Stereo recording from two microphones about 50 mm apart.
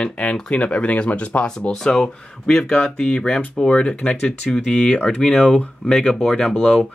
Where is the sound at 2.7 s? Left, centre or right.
Left.